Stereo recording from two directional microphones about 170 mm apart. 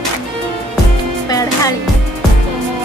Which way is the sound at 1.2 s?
20° left (ahead or behind).